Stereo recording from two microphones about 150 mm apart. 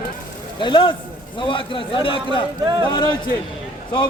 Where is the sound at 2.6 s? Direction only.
25° right (ahead or behind).